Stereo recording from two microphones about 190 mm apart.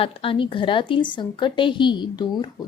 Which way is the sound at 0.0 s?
30° left (ahead or behind).